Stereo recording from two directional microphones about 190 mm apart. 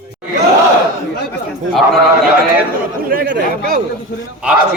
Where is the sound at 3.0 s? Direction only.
50° right (ahead or behind).